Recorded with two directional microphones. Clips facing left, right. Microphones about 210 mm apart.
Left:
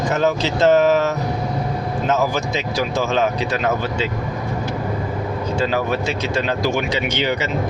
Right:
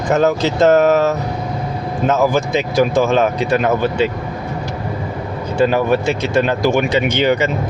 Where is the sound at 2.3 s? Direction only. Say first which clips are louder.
Right 6 dB; 55° right (ahead or behind).